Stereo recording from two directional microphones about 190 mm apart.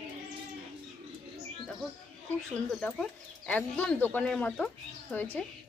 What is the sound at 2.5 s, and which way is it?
Speech, 5° left (ahead or behind).